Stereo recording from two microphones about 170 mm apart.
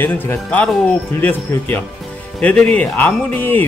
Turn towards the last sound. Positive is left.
turn(degrees=10)  # may be behind; listen again after turning